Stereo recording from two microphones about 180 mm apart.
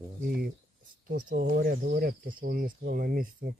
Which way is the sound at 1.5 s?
55° right (ahead or behind).